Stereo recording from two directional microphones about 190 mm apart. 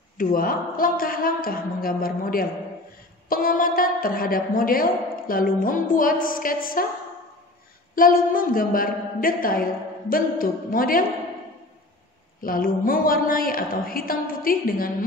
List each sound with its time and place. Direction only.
0.2 s a woman's voice: 50° left (ahead or behind)
7.9 s a woman's voice: 45° left (ahead or behind)
12.4 s a woman's voice: 50° left (ahead or behind)